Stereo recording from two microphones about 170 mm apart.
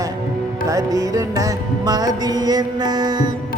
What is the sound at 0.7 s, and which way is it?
Music, 20° right (ahead or behind).